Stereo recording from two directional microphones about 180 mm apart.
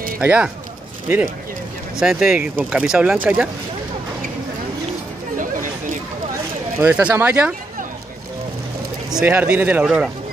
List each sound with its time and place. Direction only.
0.2 s speech: 5° right (ahead or behind)
5.4 s chatter: 45° right (ahead or behind)
6.8 s speech: 5° right (ahead or behind)
9.1 s speech: 10° right (ahead or behind)